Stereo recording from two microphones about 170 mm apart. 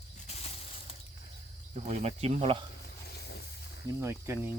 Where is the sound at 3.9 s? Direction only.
15° right (ahead or behind).